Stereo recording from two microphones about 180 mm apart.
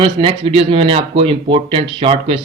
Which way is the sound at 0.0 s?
30° right (ahead or behind).